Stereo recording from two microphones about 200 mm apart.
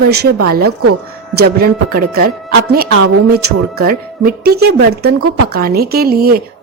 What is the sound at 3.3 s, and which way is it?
A woman's voice, 50° right (ahead or behind).